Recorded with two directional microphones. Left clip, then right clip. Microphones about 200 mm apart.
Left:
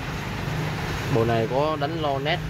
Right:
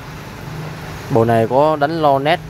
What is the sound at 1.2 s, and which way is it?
Speech, 30° right (ahead or behind).